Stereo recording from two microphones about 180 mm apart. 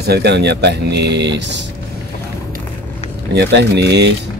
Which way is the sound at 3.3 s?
70° right (ahead or behind).